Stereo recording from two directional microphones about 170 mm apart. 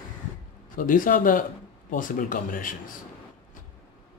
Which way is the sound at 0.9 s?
55° left (ahead or behind).